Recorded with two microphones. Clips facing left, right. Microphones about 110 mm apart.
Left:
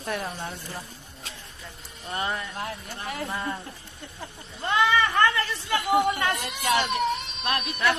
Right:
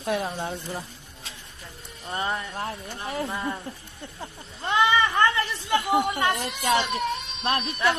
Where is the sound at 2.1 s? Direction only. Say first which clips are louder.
Right 1 dB; 15° right (ahead or behind).